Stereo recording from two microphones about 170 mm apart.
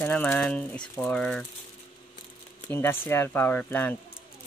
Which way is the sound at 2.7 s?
10° left (ahead or behind).